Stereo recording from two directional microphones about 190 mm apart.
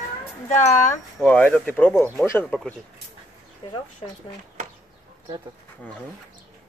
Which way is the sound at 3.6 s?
25° left (ahead or behind).